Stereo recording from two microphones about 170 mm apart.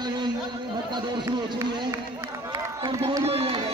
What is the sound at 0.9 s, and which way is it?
Speech, 25° right (ahead or behind).